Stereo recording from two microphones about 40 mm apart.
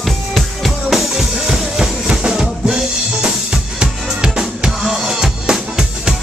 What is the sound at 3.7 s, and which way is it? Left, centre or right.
Music, right.